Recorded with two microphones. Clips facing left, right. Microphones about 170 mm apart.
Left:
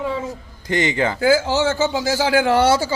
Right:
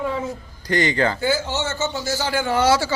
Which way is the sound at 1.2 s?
90° left.